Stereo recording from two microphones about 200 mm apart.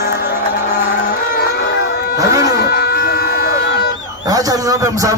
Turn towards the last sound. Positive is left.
turn(degrees=-15)  # may be behind; listen again after turning